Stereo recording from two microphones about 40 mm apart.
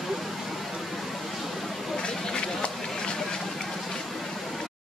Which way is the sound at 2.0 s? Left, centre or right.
Left.